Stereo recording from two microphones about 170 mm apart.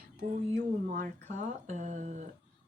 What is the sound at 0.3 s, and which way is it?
Speech, 50° right (ahead or behind).